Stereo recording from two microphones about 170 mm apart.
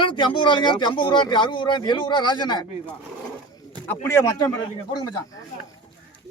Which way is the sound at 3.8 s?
15° left (ahead or behind).